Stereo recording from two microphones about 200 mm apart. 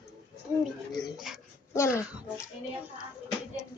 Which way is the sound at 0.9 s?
Centre (ahead or behind).